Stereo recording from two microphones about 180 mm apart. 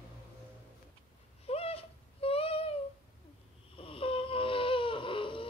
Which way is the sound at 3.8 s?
30° left (ahead or behind).